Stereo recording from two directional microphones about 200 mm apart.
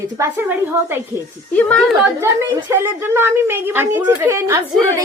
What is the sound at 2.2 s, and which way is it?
A woman's voice, 10° right (ahead or behind).